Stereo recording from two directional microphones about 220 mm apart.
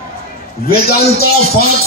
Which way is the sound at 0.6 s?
45° left (ahead or behind).